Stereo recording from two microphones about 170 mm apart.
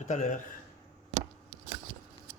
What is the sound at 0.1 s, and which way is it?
Speech, 45° left (ahead or behind).